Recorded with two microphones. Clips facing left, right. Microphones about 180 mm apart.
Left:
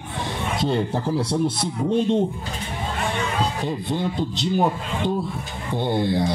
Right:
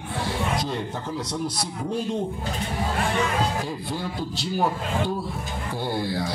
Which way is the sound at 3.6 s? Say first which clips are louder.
Left 5 dB; 20° left (ahead or behind).